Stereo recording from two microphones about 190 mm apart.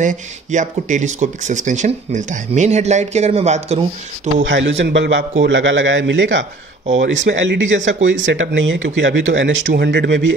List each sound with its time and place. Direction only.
0.0 s speech: 40° right (ahead or behind)
4.4 s speech: 75° right (ahead or behind)
5.4 s speech: 80° right